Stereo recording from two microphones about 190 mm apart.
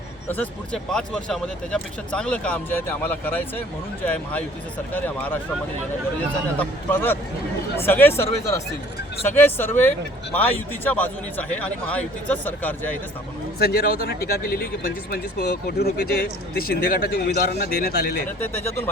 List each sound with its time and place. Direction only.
0.3 s speech: 5° left (ahead or behind)
6.6 s speech: 10° left (ahead or behind)
13.6 s speech: 55° left (ahead or behind)
18.4 s speech: 10° left (ahead or behind)